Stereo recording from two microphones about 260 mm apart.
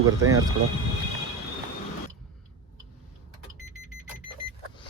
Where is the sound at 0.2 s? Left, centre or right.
Centre.